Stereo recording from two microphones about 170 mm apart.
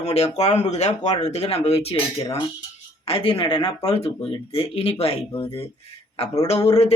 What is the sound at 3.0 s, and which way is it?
Speech, 35° left (ahead or behind).